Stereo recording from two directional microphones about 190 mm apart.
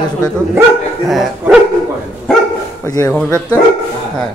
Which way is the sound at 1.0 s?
Centre (ahead or behind).